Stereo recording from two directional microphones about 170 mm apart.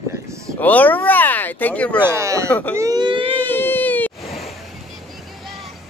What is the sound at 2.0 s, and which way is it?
Speech, 15° right (ahead or behind).